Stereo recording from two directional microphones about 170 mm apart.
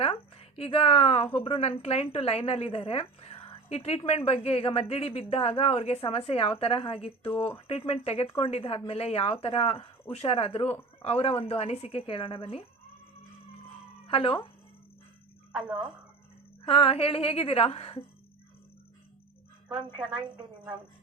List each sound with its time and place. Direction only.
0.0 s a woman's voice: 35° left (ahead or behind)
14.1 s a woman's voice: 30° left (ahead or behind)
16.6 s a woman's voice: 35° left (ahead or behind)